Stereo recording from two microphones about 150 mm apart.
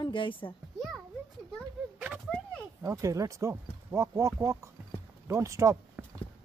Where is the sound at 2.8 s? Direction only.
20° right (ahead or behind).